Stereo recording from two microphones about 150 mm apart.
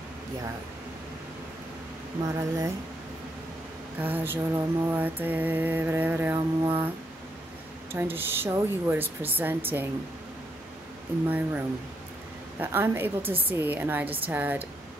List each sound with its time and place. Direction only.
2.2 s speech: 20° right (ahead or behind)
4.0 s mantra: 15° right (ahead or behind)
7.9 s mantra: 15° right (ahead or behind)
11.2 s mantra: 10° right (ahead or behind)
13.2 s a woman's voice: 40° right (ahead or behind)
13.5 s mantra: 10° right (ahead or behind)